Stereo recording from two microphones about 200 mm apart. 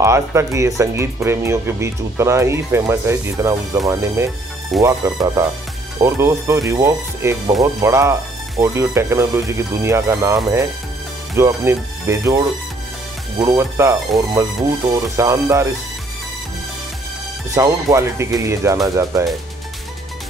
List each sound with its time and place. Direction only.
0.0 s speech: 15° right (ahead or behind)
17.6 s speech: 15° right (ahead or behind)